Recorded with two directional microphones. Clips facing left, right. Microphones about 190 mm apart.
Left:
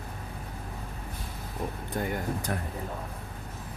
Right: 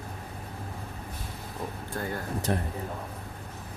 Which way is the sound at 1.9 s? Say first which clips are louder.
Left 2 dB; 20° left (ahead or behind).